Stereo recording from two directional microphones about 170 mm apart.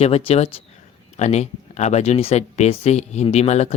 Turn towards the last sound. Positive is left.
turn(degrees=40)  # may be behind; listen again after turning